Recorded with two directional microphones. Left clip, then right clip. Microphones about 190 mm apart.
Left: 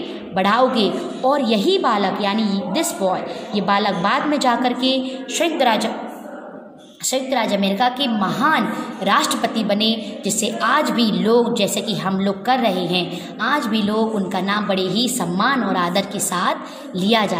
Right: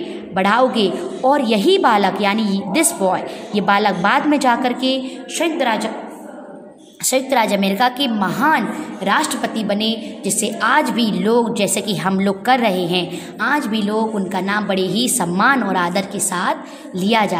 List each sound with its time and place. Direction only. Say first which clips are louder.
0.3 s a woman's voice: right 1 dB; 15° right (ahead or behind)
7.1 s a woman's voice: right 4 dB; 25° right (ahead or behind)